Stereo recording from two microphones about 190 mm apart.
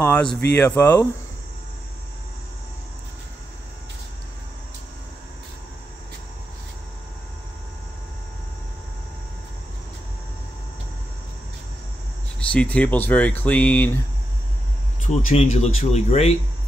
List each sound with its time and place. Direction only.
0.0 s speech: 5° left (ahead or behind)
12.4 s speech: 5° left (ahead or behind)
15.0 s speech: 40° left (ahead or behind)